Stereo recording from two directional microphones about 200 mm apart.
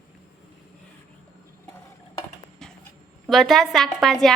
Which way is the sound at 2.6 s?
Centre (ahead or behind).